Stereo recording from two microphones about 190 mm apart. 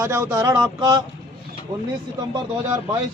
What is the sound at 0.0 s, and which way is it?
Speech, 15° right (ahead or behind).